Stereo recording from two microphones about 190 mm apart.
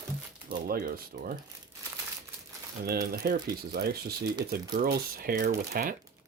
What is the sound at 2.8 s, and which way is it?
Speech, 55° right (ahead or behind).